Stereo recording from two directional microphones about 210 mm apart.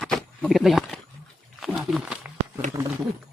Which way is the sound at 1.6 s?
Centre (ahead or behind).